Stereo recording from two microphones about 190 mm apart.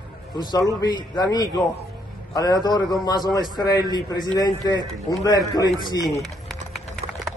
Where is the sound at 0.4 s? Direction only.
20° left (ahead or behind).